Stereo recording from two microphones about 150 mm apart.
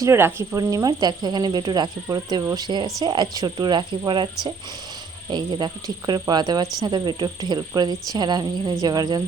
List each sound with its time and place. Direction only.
0.0 s speech: 15° right (ahead or behind)